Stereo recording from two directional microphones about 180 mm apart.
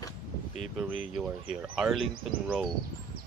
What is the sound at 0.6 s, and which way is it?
Speech, centre (ahead or behind).